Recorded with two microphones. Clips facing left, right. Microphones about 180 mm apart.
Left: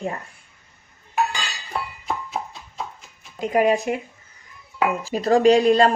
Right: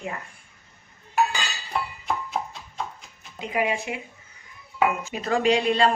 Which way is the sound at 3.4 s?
45° left (ahead or behind).